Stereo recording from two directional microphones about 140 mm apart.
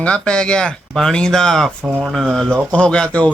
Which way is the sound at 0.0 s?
5° left (ahead or behind).